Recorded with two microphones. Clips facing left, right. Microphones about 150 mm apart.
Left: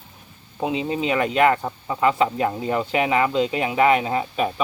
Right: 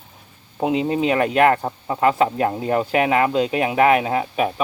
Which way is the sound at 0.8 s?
55° right (ahead or behind).